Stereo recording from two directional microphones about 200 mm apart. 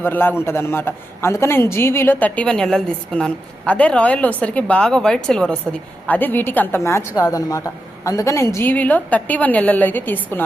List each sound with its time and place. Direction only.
0.0 s a man's voice: 10° left (ahead or behind)